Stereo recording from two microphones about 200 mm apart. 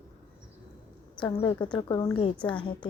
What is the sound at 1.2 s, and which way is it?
A woman's voice, 20° left (ahead or behind).